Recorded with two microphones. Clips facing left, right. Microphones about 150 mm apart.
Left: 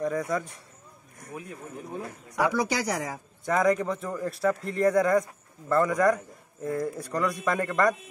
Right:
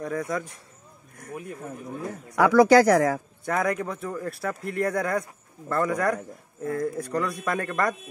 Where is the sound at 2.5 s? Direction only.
90° right.